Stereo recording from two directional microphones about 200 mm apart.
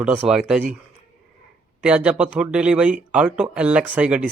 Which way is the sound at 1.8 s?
5° right (ahead or behind).